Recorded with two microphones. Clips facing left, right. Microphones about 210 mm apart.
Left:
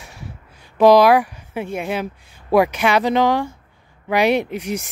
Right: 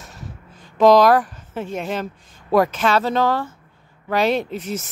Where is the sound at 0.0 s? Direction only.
10° left (ahead or behind).